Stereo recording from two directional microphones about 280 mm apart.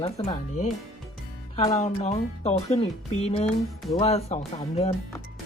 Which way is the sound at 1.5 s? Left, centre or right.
Left.